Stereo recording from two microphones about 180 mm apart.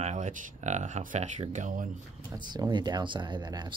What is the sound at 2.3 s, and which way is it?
Speech, 25° right (ahead or behind).